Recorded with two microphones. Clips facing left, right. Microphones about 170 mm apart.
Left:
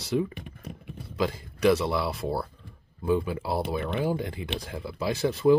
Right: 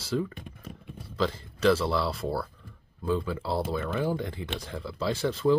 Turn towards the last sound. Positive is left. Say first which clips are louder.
# left 3 dB
turn(degrees=10)  # may be behind; listen again after turning